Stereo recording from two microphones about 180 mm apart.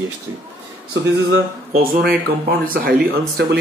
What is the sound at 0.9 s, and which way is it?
Speech, 70° right (ahead or behind).